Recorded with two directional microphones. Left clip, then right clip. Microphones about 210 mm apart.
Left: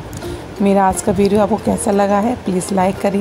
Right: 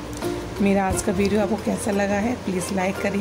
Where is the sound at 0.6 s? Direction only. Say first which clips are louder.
Left 8 dB; 10° left (ahead or behind).